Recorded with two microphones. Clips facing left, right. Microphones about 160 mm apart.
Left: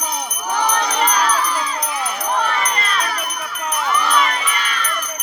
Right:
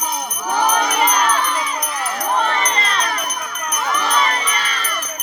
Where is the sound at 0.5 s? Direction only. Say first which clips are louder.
Right 2 dB; 10° right (ahead or behind).